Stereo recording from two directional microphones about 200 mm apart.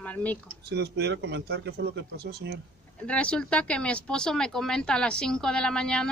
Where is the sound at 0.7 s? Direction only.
55° right (ahead or behind).